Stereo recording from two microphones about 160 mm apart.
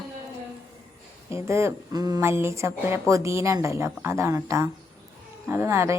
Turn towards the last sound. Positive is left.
turn(degrees=-15)  # may be behind; listen again after turning